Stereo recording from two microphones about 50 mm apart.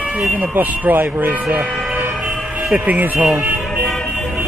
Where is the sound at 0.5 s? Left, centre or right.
Right.